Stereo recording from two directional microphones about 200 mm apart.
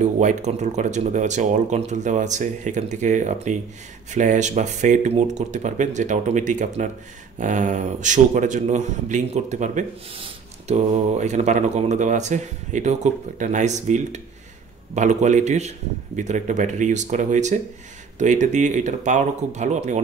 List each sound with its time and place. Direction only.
0.2 s a man's voice: 35° right (ahead or behind)